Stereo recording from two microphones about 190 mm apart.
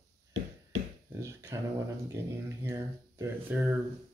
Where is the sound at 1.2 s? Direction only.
15° right (ahead or behind).